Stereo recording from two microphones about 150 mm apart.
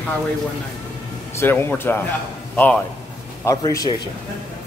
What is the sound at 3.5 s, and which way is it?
Speech, 20° left (ahead or behind).